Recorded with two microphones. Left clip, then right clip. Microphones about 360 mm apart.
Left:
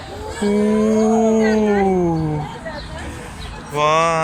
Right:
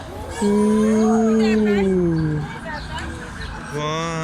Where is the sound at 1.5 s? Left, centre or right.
Left.